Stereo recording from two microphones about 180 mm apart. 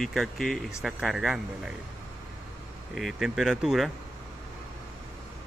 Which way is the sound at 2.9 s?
Centre (ahead or behind).